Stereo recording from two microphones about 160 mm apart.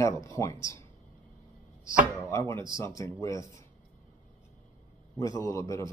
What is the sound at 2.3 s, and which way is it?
Speech, 20° left (ahead or behind).